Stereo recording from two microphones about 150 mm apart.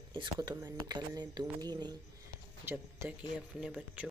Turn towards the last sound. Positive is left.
turn(degrees=-5)  # may be behind; listen again after turning